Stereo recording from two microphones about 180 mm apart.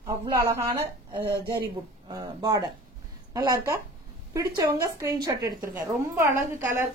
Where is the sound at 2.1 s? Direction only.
20° right (ahead or behind).